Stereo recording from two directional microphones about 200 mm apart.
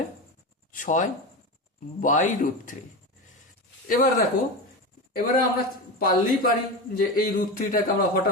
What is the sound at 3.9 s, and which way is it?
A woman's voice, 45° left (ahead or behind).